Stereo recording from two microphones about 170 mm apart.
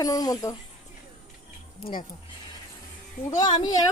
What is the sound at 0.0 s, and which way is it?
Speech, 20° left (ahead or behind).